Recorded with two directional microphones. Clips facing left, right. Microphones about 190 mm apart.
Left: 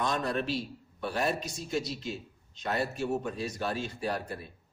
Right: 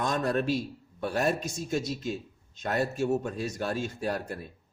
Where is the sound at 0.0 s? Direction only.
45° right (ahead or behind).